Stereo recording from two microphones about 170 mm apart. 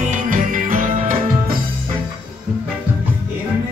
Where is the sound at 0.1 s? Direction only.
50° right (ahead or behind).